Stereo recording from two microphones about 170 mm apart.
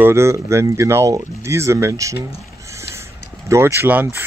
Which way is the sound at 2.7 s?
15° right (ahead or behind).